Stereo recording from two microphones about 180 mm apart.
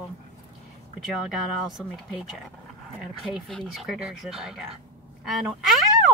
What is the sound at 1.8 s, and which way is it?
Speech, centre (ahead or behind).